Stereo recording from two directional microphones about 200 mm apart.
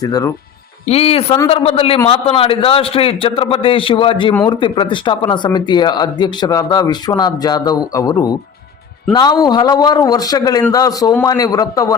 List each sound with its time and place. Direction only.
0.0 s a man's voice: 15° left (ahead or behind)
0.9 s a man's voice: 30° left (ahead or behind)